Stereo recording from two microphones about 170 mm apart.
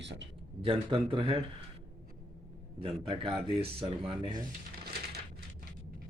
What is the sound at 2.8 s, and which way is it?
Speech, 30° right (ahead or behind).